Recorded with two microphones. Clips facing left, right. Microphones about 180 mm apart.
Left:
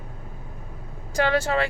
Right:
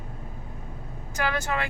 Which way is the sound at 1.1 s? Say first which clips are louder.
Left 6 dB; 35° left (ahead or behind).